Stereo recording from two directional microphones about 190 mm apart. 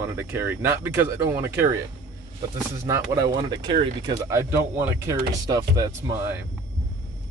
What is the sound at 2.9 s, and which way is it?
Speech, 15° right (ahead or behind).